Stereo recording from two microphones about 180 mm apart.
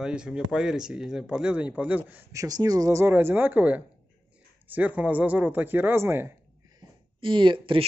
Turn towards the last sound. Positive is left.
turn(degrees=-30)  # may be behind; listen again after turning